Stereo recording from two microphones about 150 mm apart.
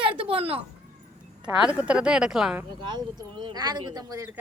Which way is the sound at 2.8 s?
30° right (ahead or behind).